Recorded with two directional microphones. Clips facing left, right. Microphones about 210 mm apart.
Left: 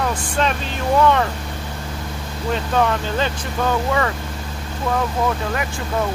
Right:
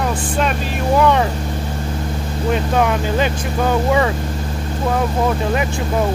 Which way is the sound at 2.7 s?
10° right (ahead or behind).